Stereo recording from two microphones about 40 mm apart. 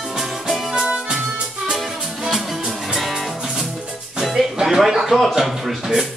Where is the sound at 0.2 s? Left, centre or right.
Centre.